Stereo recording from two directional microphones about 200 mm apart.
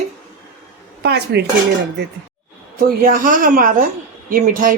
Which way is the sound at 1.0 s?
55° right (ahead or behind).